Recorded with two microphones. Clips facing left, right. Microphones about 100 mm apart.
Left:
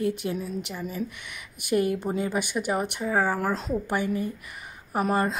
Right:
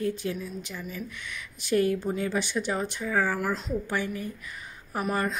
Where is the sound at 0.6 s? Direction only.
30° left (ahead or behind).